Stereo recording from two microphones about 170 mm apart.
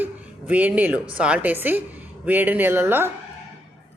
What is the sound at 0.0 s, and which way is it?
A woman's voice, 10° right (ahead or behind).